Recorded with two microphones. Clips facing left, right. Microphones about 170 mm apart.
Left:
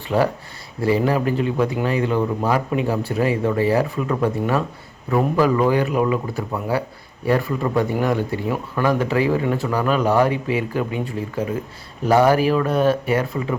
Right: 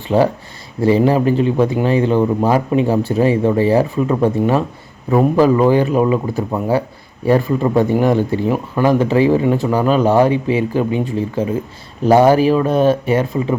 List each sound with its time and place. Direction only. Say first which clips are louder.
0.1 s speech: right 5 dB; 25° right (ahead or behind)